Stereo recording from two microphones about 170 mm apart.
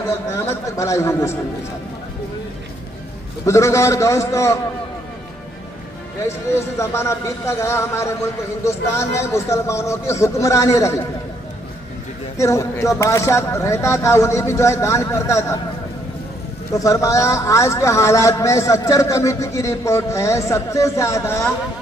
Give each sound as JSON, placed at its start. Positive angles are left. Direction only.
{"t": 0.5, "sound": "speech", "side_deg": 15}
{"t": 3.4, "sound": "speech", "side_deg": 15}
{"t": 6.2, "sound": "speech", "side_deg": 15}
{"t": 12.4, "sound": "speech", "side_deg": 20}
{"t": 16.7, "sound": "speech", "side_deg": 20}